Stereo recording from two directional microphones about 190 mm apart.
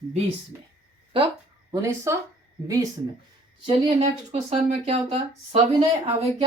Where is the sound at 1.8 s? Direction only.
15° right (ahead or behind).